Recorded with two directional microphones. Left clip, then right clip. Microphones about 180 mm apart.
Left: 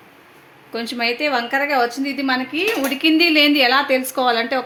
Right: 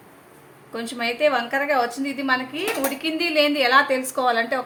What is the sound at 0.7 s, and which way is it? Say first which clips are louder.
A woman's voice: left 5 dB; 35° left (ahead or behind).